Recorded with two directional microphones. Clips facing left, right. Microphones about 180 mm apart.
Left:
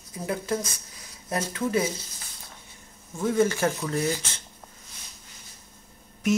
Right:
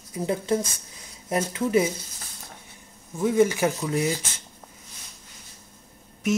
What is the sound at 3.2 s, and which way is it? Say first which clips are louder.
Speech: right 2 dB; 15° right (ahead or behind).